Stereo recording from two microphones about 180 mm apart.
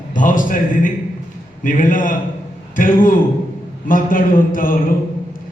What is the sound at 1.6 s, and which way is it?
A man's voice, 45° left (ahead or behind).